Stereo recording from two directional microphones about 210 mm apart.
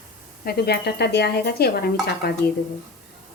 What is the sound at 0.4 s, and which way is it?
A woman's voice, 50° left (ahead or behind).